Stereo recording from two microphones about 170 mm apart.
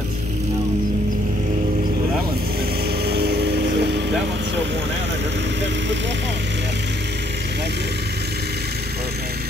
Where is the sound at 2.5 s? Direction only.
65° right (ahead or behind); by 4.8 s 90° right.